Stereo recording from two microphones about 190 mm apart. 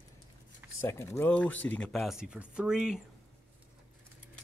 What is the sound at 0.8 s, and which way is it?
Speech, 15° left (ahead or behind).